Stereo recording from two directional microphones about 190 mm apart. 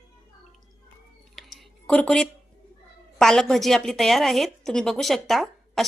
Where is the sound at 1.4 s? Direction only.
Centre (ahead or behind).